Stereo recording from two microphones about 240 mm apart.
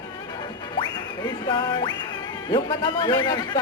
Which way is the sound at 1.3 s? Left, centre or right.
Centre.